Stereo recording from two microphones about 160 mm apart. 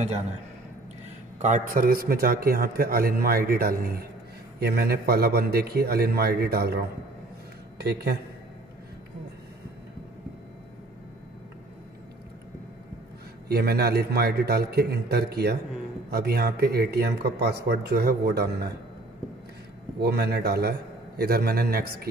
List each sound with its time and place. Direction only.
1.4 s a man's voice: 55° right (ahead or behind); by 3.9 s 70° right (ahead or behind)
4.6 s a man's voice: 80° right
13.5 s a man's voice: 80° right
20.0 s speech: 90° right
21.2 s a man's voice: 75° right (ahead or behind)